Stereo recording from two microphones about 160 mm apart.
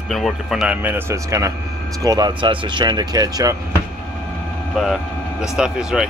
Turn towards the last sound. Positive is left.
turn(degrees=-5)  # may be behind; listen again after turning